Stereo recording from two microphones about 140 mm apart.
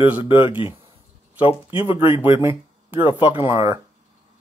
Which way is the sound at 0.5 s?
40° left (ahead or behind).